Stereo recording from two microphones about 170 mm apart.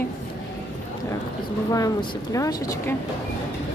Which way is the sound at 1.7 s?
20° left (ahead or behind).